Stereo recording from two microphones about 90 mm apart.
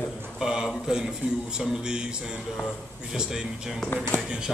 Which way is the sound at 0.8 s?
10° right (ahead or behind).